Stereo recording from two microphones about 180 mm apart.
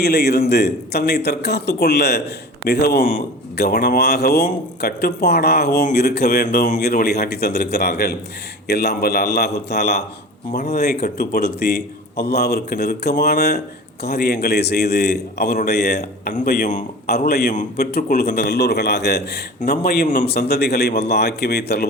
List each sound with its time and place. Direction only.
0.0 s speech: 65° left (ahead or behind)
10.5 s speech: 50° left (ahead or behind)
17.1 s speech: 60° left (ahead or behind)
20.2 s speech: 65° left (ahead or behind)